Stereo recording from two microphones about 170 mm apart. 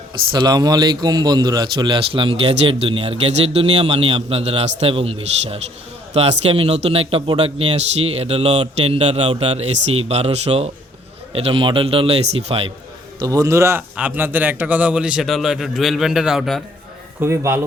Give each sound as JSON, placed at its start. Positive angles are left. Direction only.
{"t": 0.3, "sound": "a man's voice", "side_deg": -25}
{"t": 13.1, "sound": "a man's voice", "side_deg": -20}
{"t": 17.2, "sound": "a man's voice", "side_deg": -15}